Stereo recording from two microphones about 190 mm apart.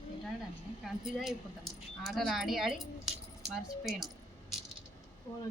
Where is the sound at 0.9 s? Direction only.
Centre (ahead or behind).